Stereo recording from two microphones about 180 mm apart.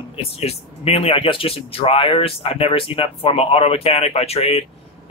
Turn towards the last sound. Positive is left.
turn(degrees=35)  # may be behind; listen again after turning